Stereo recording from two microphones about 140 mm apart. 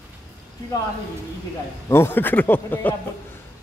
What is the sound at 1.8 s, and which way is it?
Speech, 20° left (ahead or behind).